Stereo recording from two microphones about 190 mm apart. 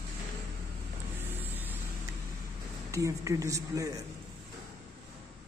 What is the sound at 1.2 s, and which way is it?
Vehicle, 10° right (ahead or behind).